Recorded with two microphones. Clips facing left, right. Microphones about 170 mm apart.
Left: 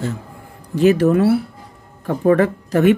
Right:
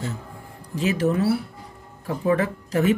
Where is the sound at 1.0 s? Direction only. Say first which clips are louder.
Left 7 dB; 65° left (ahead or behind).